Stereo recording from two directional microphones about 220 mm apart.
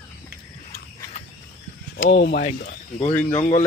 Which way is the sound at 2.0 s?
50° left (ahead or behind).